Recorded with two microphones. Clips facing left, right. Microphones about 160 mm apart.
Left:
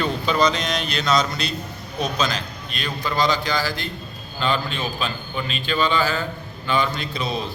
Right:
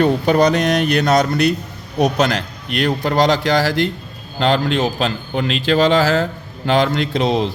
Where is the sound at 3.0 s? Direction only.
85° right.